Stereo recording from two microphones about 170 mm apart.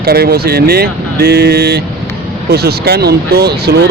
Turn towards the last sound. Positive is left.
turn(degrees=-75)  # may be behind; listen again after turning